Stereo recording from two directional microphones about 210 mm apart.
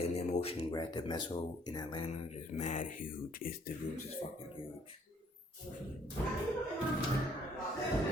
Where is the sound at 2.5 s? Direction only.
35° left (ahead or behind).